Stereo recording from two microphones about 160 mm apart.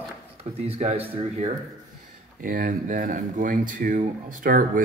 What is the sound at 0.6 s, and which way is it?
Speech, 40° right (ahead or behind).